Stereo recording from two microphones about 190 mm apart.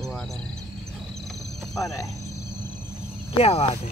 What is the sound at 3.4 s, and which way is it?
Speech, 30° left (ahead or behind).